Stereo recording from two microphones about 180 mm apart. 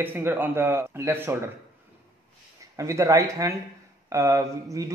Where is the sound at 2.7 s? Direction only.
15° right (ahead or behind).